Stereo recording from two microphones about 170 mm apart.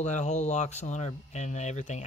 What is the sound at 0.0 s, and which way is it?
Speech, 45° left (ahead or behind).